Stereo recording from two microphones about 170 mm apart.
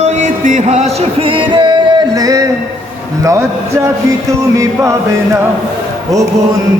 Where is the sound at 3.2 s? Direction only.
20° right (ahead or behind).